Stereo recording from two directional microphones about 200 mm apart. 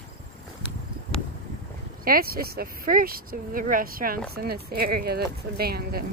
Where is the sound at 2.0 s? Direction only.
45° right (ahead or behind).